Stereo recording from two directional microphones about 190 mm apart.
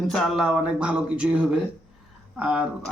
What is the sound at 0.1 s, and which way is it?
Speech, centre (ahead or behind).